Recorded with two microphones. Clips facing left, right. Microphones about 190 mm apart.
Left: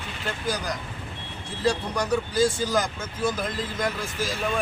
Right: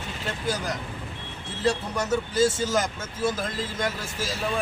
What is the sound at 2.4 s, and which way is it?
Speech, 25° right (ahead or behind).